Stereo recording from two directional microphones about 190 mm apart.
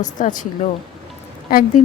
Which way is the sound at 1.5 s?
50° left (ahead or behind).